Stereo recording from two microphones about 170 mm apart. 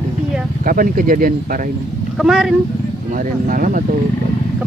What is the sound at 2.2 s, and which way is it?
Speech, centre (ahead or behind).